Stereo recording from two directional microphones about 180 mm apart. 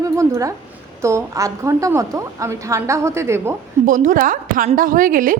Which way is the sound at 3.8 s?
45° right (ahead or behind).